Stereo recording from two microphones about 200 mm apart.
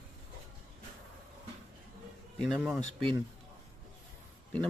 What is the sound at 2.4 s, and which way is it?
Speech, centre (ahead or behind).